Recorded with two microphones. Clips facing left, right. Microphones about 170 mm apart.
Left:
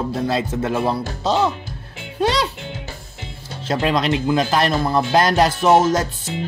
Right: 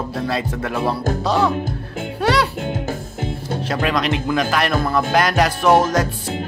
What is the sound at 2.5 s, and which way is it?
Music, 50° right (ahead or behind).